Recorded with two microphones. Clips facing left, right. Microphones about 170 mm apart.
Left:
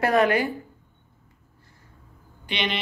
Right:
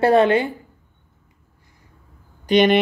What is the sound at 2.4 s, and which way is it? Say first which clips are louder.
Speech: right 14 dB; 45° right (ahead or behind).